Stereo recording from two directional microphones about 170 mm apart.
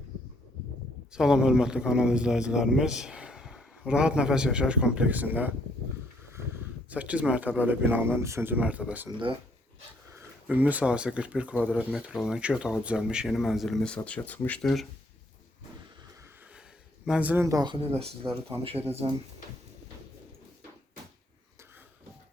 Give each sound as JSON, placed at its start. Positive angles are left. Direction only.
{"t": 1.1, "sound": "a man's voice", "side_deg": -5}
{"t": 9.0, "sound": "speech", "side_deg": -30}
{"t": 10.2, "sound": "a man's voice", "side_deg": -10}
{"t": 17.1, "sound": "speech", "side_deg": -10}
{"t": 18.9, "sound": "speech", "side_deg": -35}